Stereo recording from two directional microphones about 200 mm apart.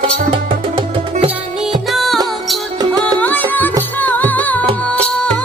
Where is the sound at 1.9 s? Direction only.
Centre (ahead or behind).